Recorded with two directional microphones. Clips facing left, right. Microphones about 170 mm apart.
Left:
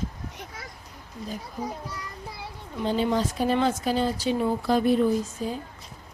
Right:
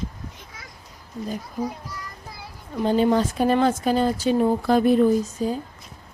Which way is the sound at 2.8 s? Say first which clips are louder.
Right 5 dB; 50° right (ahead or behind).